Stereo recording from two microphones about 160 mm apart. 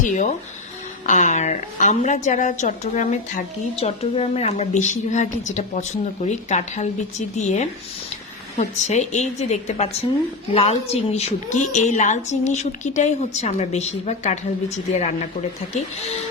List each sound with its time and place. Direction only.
0.0 s a woman's voice: 50° left (ahead or behind)